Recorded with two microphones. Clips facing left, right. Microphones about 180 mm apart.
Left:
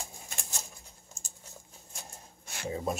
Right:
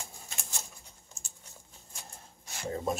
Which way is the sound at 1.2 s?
40° left (ahead or behind).